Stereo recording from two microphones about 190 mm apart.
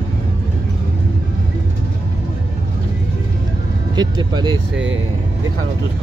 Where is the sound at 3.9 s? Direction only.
20° right (ahead or behind).